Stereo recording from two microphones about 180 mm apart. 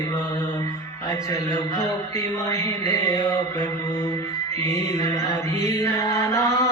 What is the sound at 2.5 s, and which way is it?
Mantra, 15° left (ahead or behind).